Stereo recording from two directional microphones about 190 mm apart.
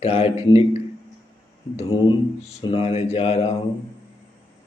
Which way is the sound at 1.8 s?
30° left (ahead or behind).